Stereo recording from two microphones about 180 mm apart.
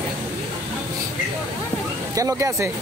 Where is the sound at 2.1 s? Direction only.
20° right (ahead or behind).